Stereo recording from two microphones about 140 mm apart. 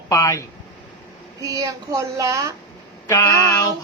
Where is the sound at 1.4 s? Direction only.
25° right (ahead or behind).